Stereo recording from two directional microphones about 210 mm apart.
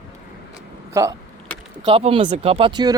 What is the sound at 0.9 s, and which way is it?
Speech, 15° right (ahead or behind).